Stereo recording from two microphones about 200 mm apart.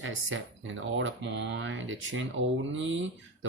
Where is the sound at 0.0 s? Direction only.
75° right (ahead or behind).